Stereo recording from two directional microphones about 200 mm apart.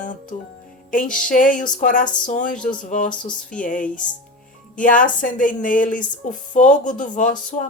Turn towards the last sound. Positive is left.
turn(degrees=35)  # may be behind; listen again after turning